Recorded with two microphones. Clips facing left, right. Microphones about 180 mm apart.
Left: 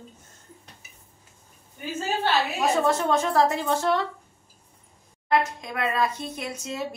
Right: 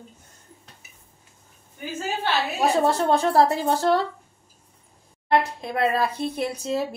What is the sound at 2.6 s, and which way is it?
Speech, 35° right (ahead or behind).